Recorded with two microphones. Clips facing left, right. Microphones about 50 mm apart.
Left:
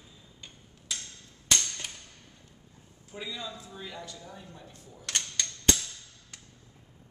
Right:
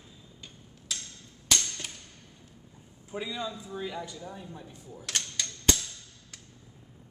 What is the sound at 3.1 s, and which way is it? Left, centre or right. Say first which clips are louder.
Speech: right 4 dB; centre.